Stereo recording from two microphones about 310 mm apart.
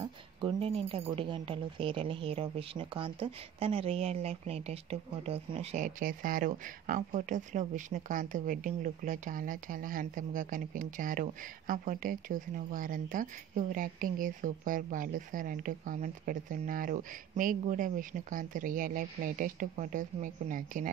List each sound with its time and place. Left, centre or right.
0.0 s speech: centre